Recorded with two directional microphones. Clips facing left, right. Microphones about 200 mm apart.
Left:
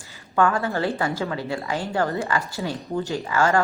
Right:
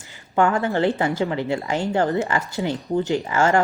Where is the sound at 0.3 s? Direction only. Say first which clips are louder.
Right 2 dB; 20° right (ahead or behind).